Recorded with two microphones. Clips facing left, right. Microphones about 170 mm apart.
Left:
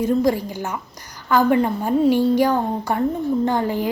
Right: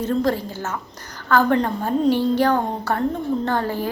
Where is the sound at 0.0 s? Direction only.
10° left (ahead or behind).